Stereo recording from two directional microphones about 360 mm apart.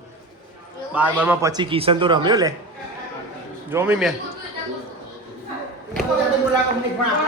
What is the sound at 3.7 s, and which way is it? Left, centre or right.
Speech, centre.